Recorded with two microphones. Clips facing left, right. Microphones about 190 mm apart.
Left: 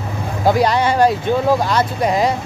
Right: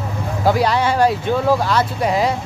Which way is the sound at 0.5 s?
5° right (ahead or behind).